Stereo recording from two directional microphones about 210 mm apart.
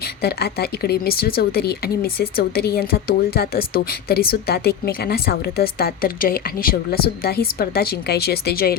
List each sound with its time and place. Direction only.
0.2 s a woman's voice: 50° left (ahead or behind)